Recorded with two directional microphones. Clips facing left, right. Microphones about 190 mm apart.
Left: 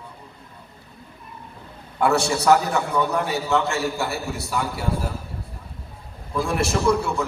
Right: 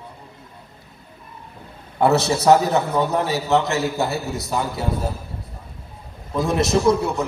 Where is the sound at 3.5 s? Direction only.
35° right (ahead or behind).